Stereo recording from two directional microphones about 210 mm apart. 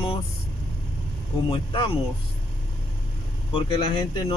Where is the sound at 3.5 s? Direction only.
25° left (ahead or behind).